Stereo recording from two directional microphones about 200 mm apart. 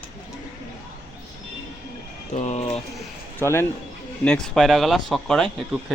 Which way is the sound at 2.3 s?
35° left (ahead or behind).